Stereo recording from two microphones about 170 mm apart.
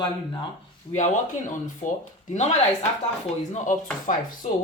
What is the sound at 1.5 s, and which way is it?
Speech, 45° left (ahead or behind).